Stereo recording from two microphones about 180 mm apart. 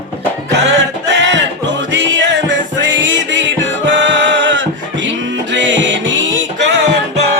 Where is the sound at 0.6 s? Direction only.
80° right.